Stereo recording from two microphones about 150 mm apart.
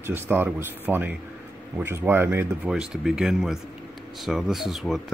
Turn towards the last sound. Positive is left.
turn(degrees=0)  # may be behind; listen again after turning